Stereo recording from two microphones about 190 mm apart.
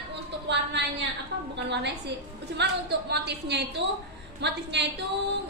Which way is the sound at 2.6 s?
60° right (ahead or behind).